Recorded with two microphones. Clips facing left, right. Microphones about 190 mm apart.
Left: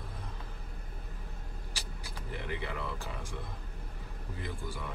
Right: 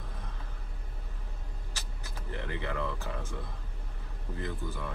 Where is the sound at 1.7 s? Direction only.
10° left (ahead or behind).